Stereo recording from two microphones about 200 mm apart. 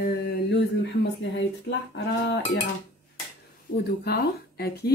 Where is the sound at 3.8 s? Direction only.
55° left (ahead or behind).